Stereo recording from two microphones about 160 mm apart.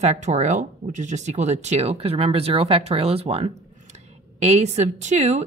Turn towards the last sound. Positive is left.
turn(degrees=-45)  # may be behind; listen again after turning